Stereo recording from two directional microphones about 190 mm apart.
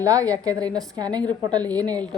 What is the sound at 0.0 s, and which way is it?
A woman's voice, 20° right (ahead or behind).